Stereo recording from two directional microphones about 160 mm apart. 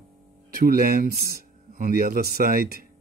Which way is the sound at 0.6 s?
70° right (ahead or behind).